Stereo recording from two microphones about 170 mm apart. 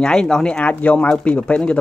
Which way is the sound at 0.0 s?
5° left (ahead or behind).